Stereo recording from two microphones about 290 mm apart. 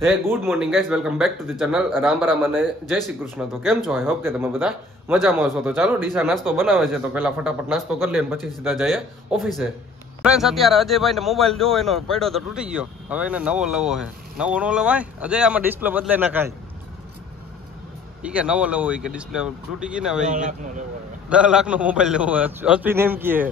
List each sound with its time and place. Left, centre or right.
0.0 s speech: centre
18.2 s speech: centre
20.2 s speech: right
21.3 s speech: centre